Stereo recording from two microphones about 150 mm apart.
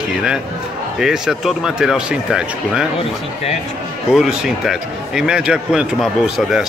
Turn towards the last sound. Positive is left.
turn(degrees=0)  # may be behind; listen again after turning